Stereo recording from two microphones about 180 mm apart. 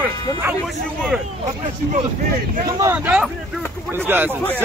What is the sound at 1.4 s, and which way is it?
Speech, 35° right (ahead or behind).